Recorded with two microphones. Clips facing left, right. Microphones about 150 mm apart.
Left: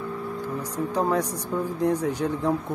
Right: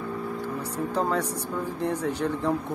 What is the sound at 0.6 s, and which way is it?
Speech, 15° left (ahead or behind).